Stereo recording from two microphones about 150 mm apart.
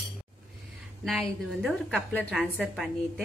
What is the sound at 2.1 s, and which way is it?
Speech, 5° left (ahead or behind).